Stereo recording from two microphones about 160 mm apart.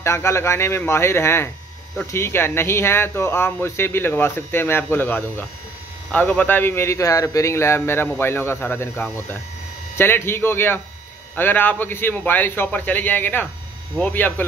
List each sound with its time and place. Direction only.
0.0 s speech: 15° left (ahead or behind)